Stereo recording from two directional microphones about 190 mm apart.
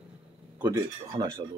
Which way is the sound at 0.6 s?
15° right (ahead or behind).